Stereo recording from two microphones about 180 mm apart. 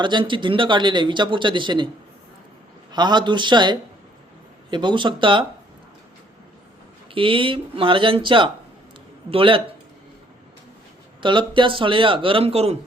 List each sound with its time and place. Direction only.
0.0 s speech: 25° right (ahead or behind)
2.9 s speech: 25° right (ahead or behind)
7.1 s speech: 30° right (ahead or behind)
11.2 s speech: 25° right (ahead or behind)